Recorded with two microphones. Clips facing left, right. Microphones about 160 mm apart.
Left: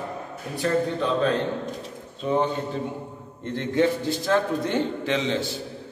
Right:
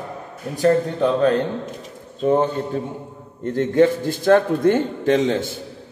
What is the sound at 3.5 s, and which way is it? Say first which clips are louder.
A man's voice: right 6 dB; 45° right (ahead or behind).